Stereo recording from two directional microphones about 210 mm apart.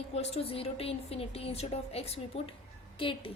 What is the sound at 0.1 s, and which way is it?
A woman's voice, 30° left (ahead or behind).